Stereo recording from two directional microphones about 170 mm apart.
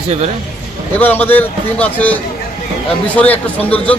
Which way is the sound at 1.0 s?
10° left (ahead or behind).